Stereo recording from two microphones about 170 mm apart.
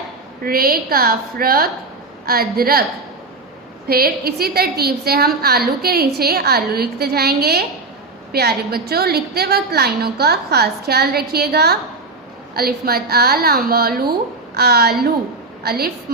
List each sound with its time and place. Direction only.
0.4 s a woman's voice: 60° right (ahead or behind)
3.8 s a woman's voice: 65° right (ahead or behind)